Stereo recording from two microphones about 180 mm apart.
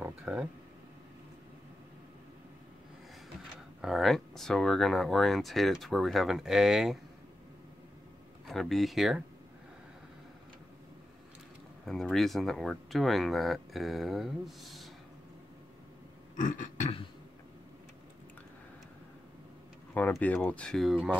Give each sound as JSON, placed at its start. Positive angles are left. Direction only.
{"t": 0.0, "sound": "a sound", "side_deg": -5}
{"t": 3.8, "sound": "speech", "side_deg": 0}
{"t": 8.5, "sound": "speech", "side_deg": 0}
{"t": 11.8, "sound": "speech", "side_deg": 0}
{"t": 16.3, "sound": "burping", "side_deg": 45}
{"t": 19.9, "sound": "speech", "side_deg": 10}